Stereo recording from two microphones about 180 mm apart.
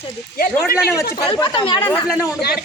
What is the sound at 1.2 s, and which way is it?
Speech, 25° left (ahead or behind).